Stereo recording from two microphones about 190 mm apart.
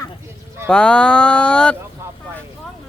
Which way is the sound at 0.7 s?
5° left (ahead or behind).